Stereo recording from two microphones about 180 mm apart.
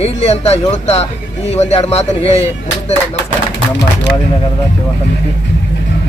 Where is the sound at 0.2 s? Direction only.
35° left (ahead or behind).